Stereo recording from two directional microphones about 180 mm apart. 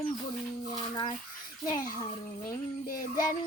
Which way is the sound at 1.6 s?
20° left (ahead or behind).